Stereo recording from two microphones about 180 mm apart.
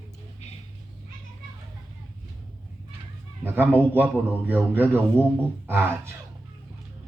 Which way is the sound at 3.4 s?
10° right (ahead or behind).